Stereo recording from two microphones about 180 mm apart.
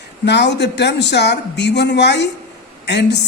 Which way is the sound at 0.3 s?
70° left (ahead or behind).